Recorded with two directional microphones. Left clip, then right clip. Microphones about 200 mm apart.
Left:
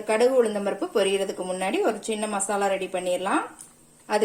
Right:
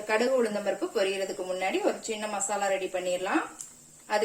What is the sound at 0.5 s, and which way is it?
A woman's voice, 40° left (ahead or behind).